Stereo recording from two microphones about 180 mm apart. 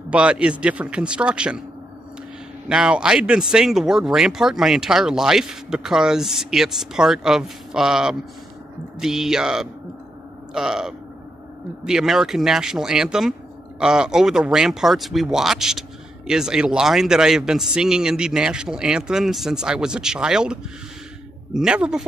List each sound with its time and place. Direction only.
0.1 s a man's voice: 5° right (ahead or behind)
2.7 s speech: 5° right (ahead or behind)
21.5 s speech: 5° right (ahead or behind)